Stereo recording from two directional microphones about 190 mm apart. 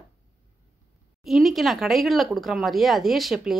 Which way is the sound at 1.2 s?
Centre (ahead or behind).